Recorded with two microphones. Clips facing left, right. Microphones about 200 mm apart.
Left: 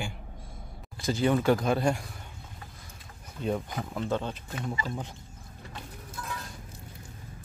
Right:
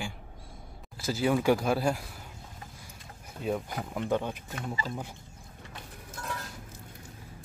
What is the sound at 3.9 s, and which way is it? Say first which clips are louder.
Speech: right 1 dB; 15° right (ahead or behind).